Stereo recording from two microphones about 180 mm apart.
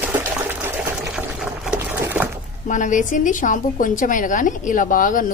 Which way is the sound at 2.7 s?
45° left (ahead or behind).